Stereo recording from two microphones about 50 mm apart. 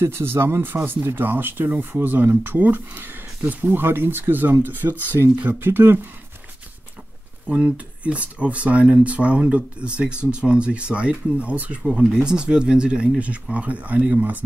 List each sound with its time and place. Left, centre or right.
0.0 s speech: right
7.4 s speech: right
12.1 s speech: centre; by 14.4 s right